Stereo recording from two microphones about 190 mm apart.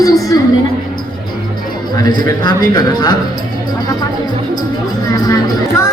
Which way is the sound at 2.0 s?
20° left (ahead or behind).